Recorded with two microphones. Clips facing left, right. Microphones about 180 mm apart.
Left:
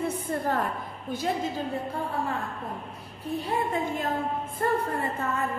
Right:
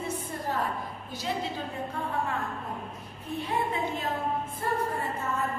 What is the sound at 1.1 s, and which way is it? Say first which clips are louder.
Speech: left 4 dB; 45° left (ahead or behind).